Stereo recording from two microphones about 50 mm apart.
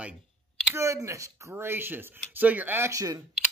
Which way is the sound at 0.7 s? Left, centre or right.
Right.